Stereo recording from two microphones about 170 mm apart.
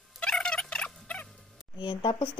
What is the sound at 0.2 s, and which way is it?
Fowl, 5° left (ahead or behind).